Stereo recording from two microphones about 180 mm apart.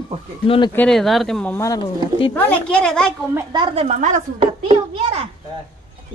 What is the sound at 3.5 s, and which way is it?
Speech, 25° right (ahead or behind).